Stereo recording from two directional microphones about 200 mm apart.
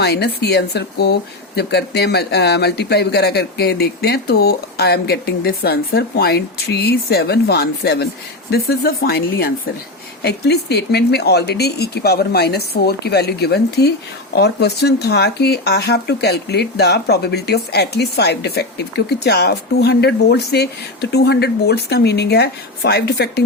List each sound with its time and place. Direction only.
0.0 s speech: 55° left (ahead or behind)